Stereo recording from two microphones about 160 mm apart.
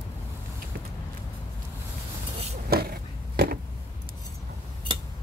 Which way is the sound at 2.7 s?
70° right (ahead or behind).